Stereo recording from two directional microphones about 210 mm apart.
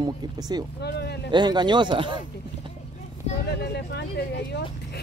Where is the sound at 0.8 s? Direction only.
50° left (ahead or behind).